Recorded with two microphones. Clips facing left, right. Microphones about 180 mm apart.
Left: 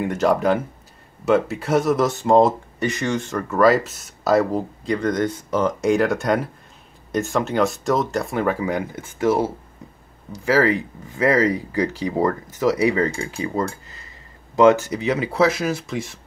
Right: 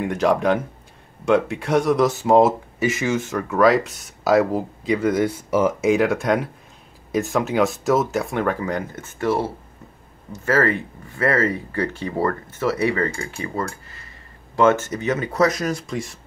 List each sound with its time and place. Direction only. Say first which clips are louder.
0.0 s speech: even; centre (ahead or behind)
10.4 s speech: left 2 dB; 10° left (ahead or behind)
14.5 s speech: left 3 dB; 15° left (ahead or behind)